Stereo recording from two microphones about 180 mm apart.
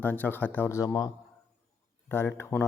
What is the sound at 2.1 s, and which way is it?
Speech, 15° left (ahead or behind).